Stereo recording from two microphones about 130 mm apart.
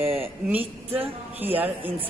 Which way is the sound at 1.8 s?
45° right (ahead or behind).